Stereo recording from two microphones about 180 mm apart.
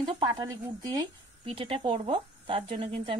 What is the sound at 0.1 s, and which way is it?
A woman's voice, 25° right (ahead or behind).